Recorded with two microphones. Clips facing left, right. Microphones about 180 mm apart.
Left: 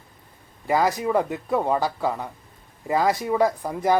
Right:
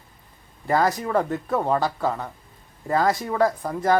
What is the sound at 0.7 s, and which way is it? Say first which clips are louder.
Speech: even; 15° left (ahead or behind).